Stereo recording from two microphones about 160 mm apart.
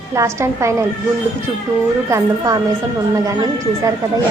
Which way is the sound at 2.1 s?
20° right (ahead or behind).